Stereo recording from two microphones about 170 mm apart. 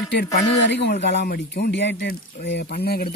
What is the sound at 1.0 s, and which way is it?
Speech, 75° left (ahead or behind).